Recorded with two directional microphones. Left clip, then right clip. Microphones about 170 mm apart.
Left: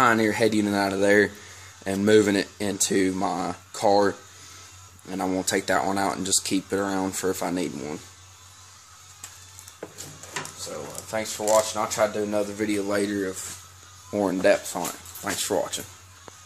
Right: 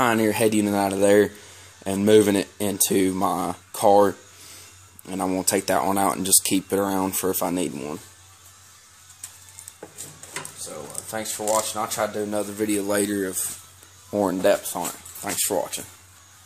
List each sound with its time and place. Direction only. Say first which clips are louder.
0.0 s speech: even; 35° right (ahead or behind)
11.1 s speech: left 2 dB; 25° right (ahead or behind); by 13.4 s 50° right (ahead or behind)
14.1 s speech: right 1 dB; 20° right (ahead or behind)